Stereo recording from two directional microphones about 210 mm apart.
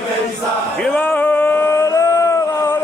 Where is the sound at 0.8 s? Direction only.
5° left (ahead or behind).